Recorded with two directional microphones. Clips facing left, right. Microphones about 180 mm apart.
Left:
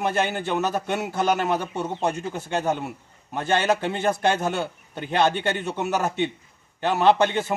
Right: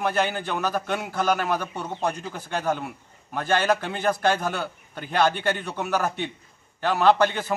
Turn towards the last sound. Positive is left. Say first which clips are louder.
# left 1 dB
turn(degrees=20)  # may be behind; listen again after turning